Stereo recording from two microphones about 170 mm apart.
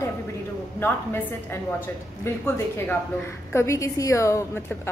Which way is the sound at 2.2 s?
10° left (ahead or behind).